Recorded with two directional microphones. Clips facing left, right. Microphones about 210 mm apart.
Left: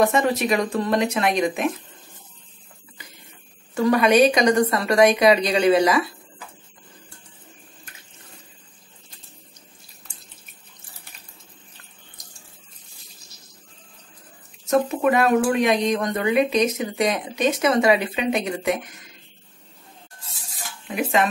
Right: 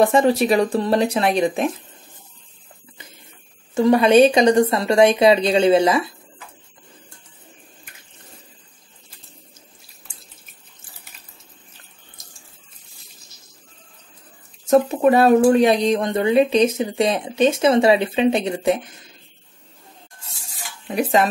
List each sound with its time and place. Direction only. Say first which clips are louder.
0.0 s speech: right 4 dB; 30° right (ahead or behind)
3.7 s speech: right 4 dB; 25° right (ahead or behind)
14.7 s speech: right 4 dB; 30° right (ahead or behind)
20.8 s speech: right 3 dB; 35° right (ahead or behind)